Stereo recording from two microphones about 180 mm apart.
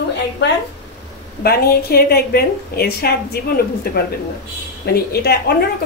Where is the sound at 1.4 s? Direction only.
60° left (ahead or behind).